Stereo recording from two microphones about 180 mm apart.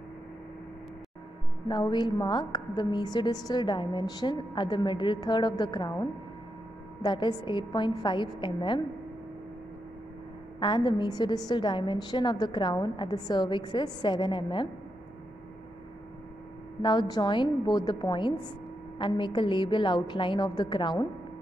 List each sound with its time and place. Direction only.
1.7 s a woman's voice: 25° left (ahead or behind)
10.6 s a woman's voice: 25° left (ahead or behind)
16.8 s a woman's voice: 25° left (ahead or behind)